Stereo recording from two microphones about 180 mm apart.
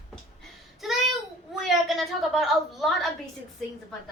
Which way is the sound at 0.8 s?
Centre (ahead or behind).